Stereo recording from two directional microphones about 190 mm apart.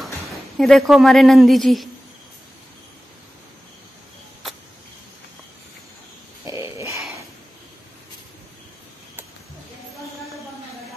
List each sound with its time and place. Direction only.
0.6 s a woman's voice: centre (ahead or behind)
6.4 s grunt: 15° right (ahead or behind)